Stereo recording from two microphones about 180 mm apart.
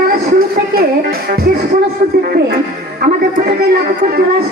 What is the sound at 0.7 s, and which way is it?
Speech, 55° right (ahead or behind).